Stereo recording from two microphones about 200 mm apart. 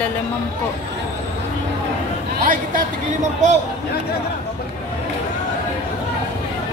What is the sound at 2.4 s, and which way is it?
Speech, 40° right (ahead or behind).